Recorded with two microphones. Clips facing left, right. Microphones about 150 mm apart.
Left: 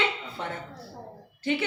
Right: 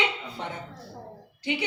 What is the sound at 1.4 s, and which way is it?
Speech, 15° right (ahead or behind).